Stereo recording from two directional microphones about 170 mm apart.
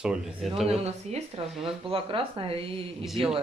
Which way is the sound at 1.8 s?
30° right (ahead or behind).